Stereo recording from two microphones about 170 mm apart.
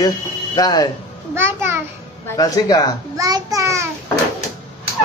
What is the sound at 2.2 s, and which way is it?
Speech, 20° left (ahead or behind).